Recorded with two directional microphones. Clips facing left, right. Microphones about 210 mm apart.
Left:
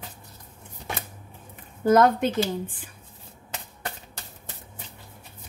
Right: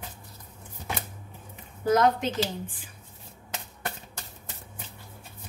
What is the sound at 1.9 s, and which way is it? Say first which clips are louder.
Speech: left 4 dB; 55° left (ahead or behind).